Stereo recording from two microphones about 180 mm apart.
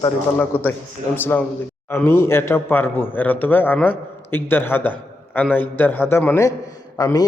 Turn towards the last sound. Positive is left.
turn(degrees=20)  # may be behind; listen again after turning